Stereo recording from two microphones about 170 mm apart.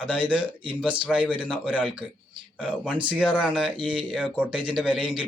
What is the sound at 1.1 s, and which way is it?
Speech, centre (ahead or behind).